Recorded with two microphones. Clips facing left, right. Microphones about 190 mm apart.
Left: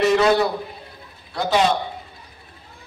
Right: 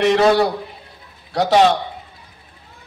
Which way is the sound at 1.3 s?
80° right.